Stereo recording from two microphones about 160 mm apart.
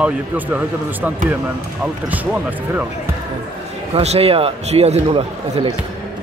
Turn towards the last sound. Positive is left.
turn(degrees=-35)  # may be behind; listen again after turning